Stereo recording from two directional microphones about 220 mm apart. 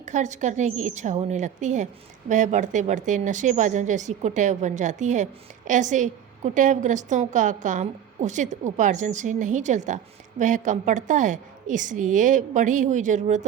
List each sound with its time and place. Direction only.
0.0 s a woman's voice: 35° right (ahead or behind)